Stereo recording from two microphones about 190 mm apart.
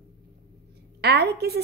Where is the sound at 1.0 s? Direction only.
60° right (ahead or behind).